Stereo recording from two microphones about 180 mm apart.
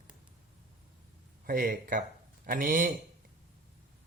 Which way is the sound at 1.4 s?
50° right (ahead or behind).